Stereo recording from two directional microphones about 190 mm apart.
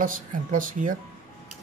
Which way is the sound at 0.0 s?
45° right (ahead or behind).